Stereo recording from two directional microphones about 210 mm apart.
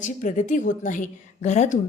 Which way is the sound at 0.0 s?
35° left (ahead or behind).